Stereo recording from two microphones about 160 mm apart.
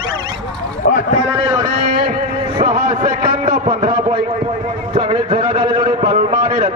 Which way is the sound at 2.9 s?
35° right (ahead or behind).